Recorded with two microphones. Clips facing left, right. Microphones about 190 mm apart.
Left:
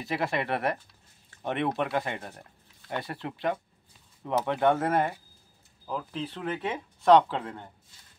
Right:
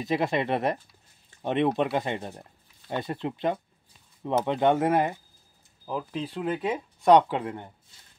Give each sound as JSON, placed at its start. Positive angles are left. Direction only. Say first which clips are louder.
{"t": 0.0, "sound": "speech", "louder": "right 4 dB", "side_deg": -20}